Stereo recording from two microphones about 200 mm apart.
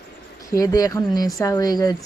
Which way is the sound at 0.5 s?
20° left (ahead or behind).